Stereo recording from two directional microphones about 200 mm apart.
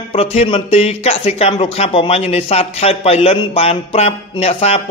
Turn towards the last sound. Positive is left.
turn(degrees=30)  # may be behind; listen again after turning